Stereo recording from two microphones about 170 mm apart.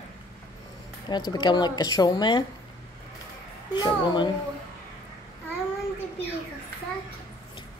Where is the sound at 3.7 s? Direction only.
25° left (ahead or behind).